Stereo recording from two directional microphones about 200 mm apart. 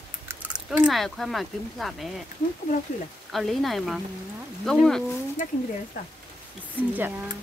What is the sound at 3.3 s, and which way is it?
Speech, centre (ahead or behind).